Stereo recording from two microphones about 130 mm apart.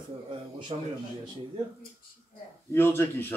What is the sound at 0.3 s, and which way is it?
Speech, 40° right (ahead or behind).